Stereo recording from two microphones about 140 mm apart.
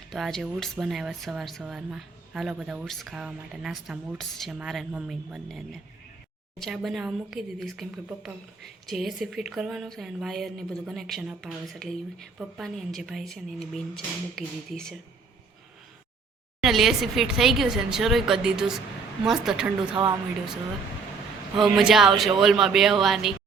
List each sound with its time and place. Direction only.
0.1 s a woman's voice: centre (ahead or behind)
16.6 s a woman's voice: centre (ahead or behind)
19.9 s speech: 35° right (ahead or behind)
21.6 s a woman's voice: centre (ahead or behind)